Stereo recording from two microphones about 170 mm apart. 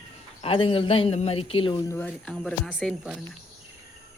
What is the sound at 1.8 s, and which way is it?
Speech, 10° left (ahead or behind).